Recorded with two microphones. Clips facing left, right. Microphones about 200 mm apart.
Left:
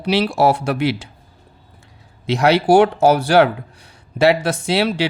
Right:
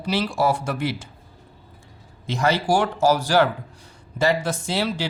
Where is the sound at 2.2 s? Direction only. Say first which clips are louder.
Left 7 dB; 75° left (ahead or behind).